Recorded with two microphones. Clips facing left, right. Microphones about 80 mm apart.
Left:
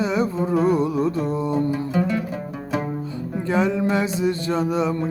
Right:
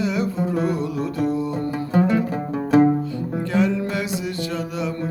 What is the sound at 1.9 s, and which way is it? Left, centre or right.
Music, right.